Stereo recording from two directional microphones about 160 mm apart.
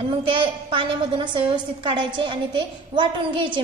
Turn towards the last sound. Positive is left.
turn(degrees=-30)  # may be behind; listen again after turning